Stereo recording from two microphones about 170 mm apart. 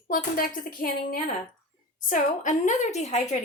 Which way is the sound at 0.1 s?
55° left (ahead or behind).